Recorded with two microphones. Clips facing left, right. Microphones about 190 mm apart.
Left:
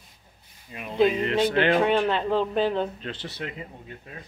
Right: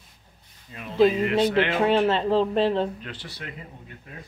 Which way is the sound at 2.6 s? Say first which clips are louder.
Right 2 dB; 30° right (ahead or behind).